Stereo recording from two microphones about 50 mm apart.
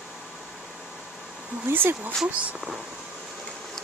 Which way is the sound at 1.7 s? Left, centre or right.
Right.